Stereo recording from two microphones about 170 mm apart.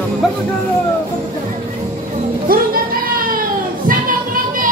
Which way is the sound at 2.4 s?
60° right (ahead or behind).